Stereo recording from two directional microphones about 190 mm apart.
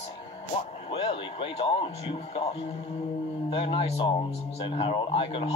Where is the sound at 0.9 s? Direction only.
30° left (ahead or behind).